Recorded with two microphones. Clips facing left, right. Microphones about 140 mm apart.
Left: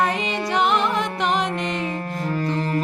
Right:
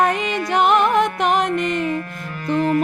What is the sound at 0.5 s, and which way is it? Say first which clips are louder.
Music: right 5 dB; 50° right (ahead or behind).